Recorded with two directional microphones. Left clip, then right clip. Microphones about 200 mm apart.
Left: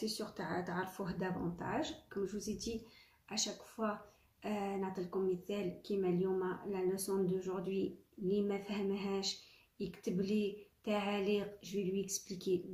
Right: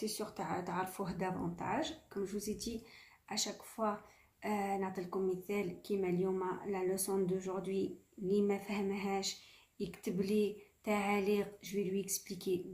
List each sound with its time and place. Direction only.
0.0 s speech: 35° right (ahead or behind)